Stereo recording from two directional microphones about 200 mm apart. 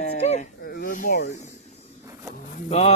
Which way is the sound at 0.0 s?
35° left (ahead or behind).